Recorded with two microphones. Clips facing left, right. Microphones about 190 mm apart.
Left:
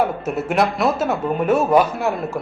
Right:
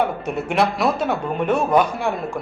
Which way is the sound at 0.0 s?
5° left (ahead or behind).